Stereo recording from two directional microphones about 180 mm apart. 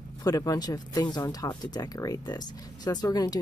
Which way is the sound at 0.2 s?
20° left (ahead or behind).